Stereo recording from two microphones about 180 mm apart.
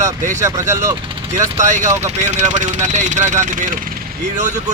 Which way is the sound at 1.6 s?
40° right (ahead or behind).